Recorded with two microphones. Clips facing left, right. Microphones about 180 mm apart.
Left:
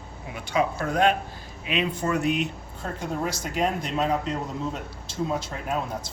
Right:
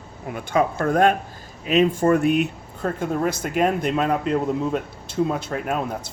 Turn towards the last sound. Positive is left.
turn(degrees=-60)  # may be behind; listen again after turning